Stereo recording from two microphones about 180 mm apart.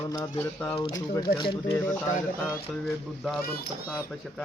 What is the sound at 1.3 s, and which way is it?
Speech, 30° left (ahead or behind).